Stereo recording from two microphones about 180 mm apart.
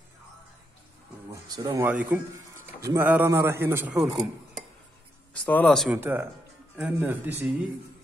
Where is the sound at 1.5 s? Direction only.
20° right (ahead or behind).